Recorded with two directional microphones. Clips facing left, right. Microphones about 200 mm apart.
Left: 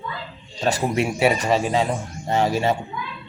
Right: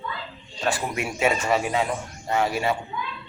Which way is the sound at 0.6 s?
40° left (ahead or behind).